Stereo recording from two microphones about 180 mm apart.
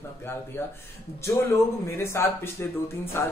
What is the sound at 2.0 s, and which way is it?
A man's voice, 15° left (ahead or behind).